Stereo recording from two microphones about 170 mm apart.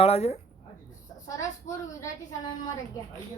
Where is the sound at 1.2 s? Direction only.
20° left (ahead or behind).